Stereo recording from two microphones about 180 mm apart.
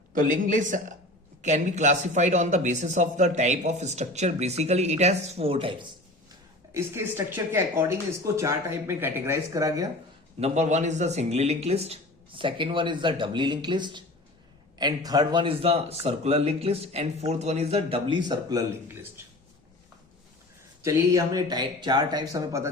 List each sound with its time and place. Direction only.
0.1 s a woman's voice: 45° right (ahead or behind); by 5.7 s 30° right (ahead or behind)
6.7 s speech: 10° right (ahead or behind)
10.4 s speech: 40° right (ahead or behind); by 18.6 s 20° right (ahead or behind)
21.1 s speech: 20° right (ahead or behind)